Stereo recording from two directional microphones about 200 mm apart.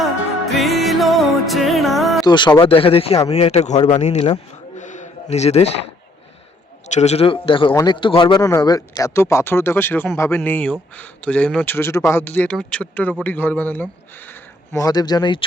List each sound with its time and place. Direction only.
0.0 s music: centre (ahead or behind)
2.2 s speech: 20° left (ahead or behind)
4.8 s a sound: 35° left (ahead or behind)
6.8 s speech: 35° left (ahead or behind)